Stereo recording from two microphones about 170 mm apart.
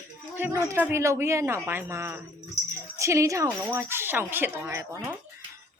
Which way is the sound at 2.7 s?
15° right (ahead or behind).